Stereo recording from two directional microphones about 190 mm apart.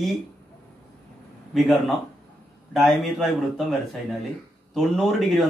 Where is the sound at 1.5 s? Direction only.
Centre (ahead or behind).